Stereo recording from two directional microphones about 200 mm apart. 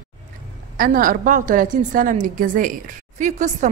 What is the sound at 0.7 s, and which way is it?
A woman's voice, 45° right (ahead or behind).